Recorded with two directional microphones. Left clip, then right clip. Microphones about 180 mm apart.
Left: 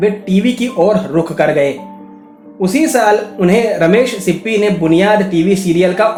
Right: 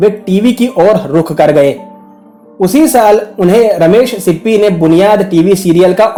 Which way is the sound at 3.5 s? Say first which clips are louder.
Right 5 dB; 40° right (ahead or behind).